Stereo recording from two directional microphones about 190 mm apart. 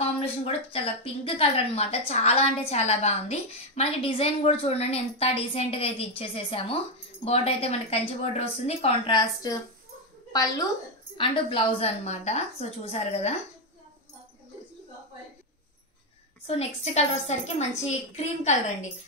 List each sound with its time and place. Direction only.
0.0 s a woman's voice: 30° left (ahead or behind)
11.1 s a woman's voice: 35° left (ahead or behind)
16.4 s a woman's voice: 35° left (ahead or behind)